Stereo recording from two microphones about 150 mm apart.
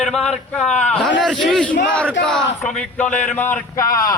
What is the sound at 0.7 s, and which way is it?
Speech, 50° left (ahead or behind).